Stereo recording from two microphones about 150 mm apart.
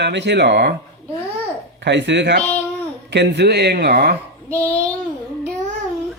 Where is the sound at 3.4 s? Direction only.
90° right.